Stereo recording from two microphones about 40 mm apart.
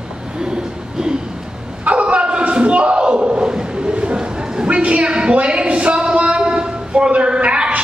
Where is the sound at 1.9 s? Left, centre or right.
Right.